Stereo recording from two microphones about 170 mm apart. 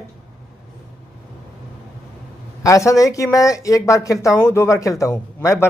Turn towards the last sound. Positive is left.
turn(degrees=20)  # may be behind; listen again after turning